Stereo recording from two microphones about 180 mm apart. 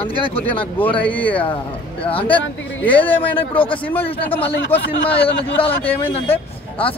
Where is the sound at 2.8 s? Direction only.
10° left (ahead or behind).